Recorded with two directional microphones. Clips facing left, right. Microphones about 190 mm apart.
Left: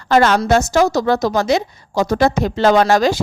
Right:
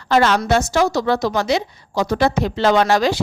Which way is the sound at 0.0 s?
45° left (ahead or behind).